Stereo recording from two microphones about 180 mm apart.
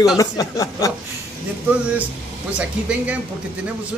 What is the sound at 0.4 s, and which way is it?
Speech, 20° left (ahead or behind).